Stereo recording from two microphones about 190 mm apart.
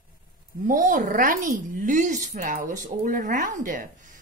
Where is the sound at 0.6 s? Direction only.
45° right (ahead or behind).